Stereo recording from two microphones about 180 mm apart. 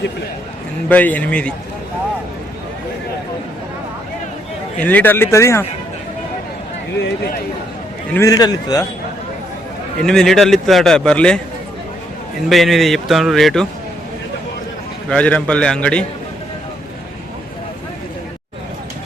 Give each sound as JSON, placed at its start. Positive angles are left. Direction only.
{"t": 0.9, "sound": "a man's voice", "side_deg": 10}
{"t": 4.8, "sound": "a man's voice", "side_deg": 10}
{"t": 8.1, "sound": "a man's voice", "side_deg": 20}
{"t": 10.1, "sound": "speech", "side_deg": 5}
{"t": 12.5, "sound": "speech", "side_deg": 0}
{"t": 15.1, "sound": "speech", "side_deg": 5}